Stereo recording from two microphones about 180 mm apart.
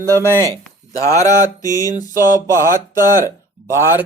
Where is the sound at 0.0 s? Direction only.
15° right (ahead or behind).